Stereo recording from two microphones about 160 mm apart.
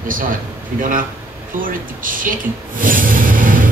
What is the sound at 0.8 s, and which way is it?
Speech, 60° right (ahead or behind).